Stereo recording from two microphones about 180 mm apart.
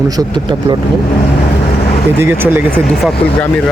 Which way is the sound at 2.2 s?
10° right (ahead or behind).